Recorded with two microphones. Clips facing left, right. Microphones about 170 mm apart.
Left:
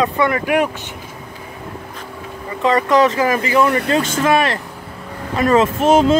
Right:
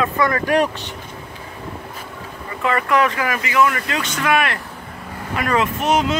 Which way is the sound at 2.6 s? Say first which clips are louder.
Left 4 dB; 20° left (ahead or behind).